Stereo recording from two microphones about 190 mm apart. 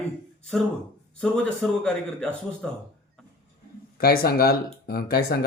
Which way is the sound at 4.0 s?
55° left (ahead or behind).